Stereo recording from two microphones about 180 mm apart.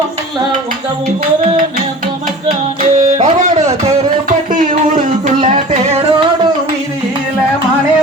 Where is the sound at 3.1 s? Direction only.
40° right (ahead or behind).